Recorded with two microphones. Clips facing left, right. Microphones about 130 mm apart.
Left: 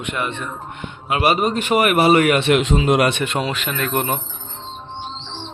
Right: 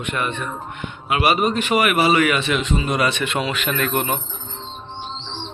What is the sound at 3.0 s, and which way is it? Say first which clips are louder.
Speech: left 2 dB; 45° left (ahead or behind).